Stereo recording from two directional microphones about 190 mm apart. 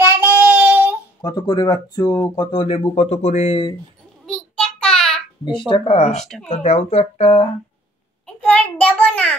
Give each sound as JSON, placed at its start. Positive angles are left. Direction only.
{"t": 0.0, "sound": "child singing", "side_deg": -10}
{"t": 1.2, "sound": "speech", "side_deg": 25}
{"t": 4.3, "sound": "child singing", "side_deg": 5}
{"t": 5.7, "sound": "speech", "side_deg": 35}
{"t": 6.2, "sound": "speech", "side_deg": 0}
{"t": 6.5, "sound": "speech", "side_deg": 35}
{"t": 8.3, "sound": "child singing", "side_deg": 5}